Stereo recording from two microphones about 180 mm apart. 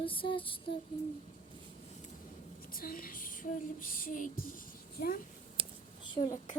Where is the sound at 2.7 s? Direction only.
55° left (ahead or behind).